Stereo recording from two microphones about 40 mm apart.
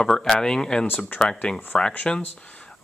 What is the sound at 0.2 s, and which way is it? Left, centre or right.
Speech, centre.